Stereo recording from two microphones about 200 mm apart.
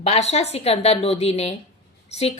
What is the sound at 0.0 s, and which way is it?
A woman's voice, 30° left (ahead or behind).